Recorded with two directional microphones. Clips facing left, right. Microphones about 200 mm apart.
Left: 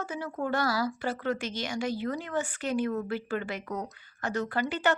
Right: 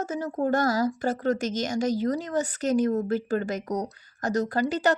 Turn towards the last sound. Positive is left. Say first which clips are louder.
# right 4 dB
turn(degrees=-35)  # may be behind; listen again after turning